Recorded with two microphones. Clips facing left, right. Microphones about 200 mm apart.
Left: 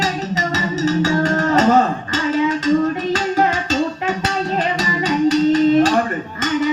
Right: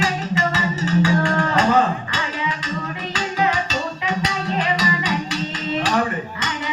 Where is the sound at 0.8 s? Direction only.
40° left (ahead or behind).